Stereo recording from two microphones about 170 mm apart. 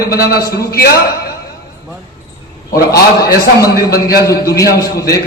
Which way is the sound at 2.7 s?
65° left (ahead or behind).